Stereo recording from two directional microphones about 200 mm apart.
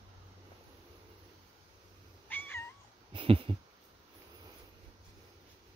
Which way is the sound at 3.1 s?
25° right (ahead or behind).